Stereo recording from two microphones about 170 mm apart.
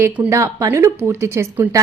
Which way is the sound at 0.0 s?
15° right (ahead or behind).